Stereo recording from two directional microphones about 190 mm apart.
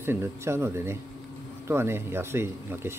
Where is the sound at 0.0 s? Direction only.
15° right (ahead or behind).